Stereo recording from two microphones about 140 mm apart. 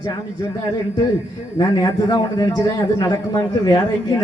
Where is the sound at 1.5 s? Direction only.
25° left (ahead or behind).